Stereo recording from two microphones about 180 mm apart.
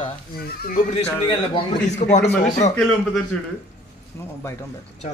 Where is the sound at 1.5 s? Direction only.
40° left (ahead or behind).